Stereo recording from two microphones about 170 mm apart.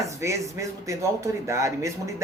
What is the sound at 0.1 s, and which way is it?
A man's voice, 15° right (ahead or behind).